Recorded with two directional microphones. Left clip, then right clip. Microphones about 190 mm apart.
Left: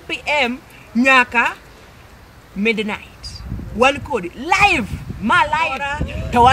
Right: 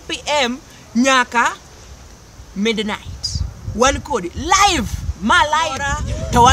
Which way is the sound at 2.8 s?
5° right (ahead or behind).